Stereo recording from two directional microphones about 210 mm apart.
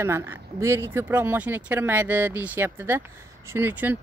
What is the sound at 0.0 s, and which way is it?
Speech, 10° right (ahead or behind).